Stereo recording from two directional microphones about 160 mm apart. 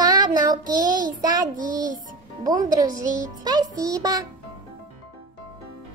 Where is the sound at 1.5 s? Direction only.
55° right (ahead or behind).